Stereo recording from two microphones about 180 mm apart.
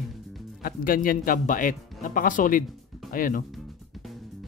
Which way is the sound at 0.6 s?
55° left (ahead or behind).